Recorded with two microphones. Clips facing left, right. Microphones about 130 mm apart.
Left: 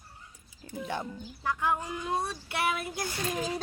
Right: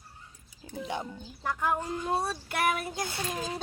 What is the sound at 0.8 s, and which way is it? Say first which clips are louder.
Speech: even; 15° right (ahead or behind).